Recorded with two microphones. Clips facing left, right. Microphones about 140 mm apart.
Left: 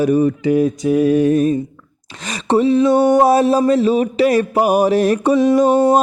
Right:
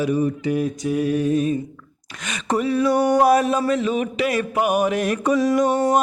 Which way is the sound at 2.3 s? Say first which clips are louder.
Left 7 dB; 30° left (ahead or behind).